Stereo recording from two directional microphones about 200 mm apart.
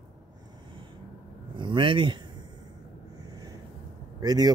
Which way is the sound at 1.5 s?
25° right (ahead or behind).